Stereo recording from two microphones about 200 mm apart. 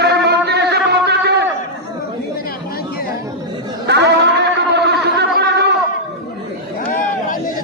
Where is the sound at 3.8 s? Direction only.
60° right (ahead or behind).